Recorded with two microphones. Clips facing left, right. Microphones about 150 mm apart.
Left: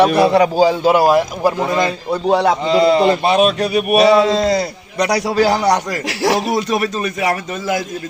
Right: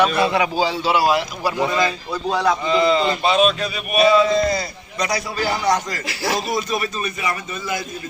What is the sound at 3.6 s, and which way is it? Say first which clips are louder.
A man's voice: left 5 dB; 65° left (ahead or behind).